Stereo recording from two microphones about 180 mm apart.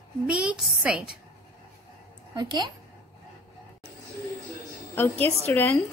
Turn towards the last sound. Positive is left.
turn(degrees=10)  # may be behind; listen again after turning